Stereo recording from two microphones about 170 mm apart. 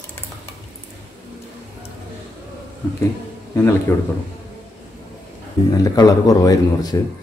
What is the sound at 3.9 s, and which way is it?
Speech, 15° left (ahead or behind).